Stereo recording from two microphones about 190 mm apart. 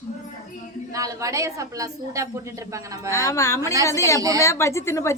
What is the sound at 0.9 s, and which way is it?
A woman's voice, 15° right (ahead or behind).